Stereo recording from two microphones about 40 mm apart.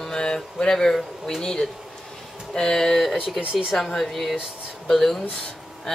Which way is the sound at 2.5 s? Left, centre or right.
Centre.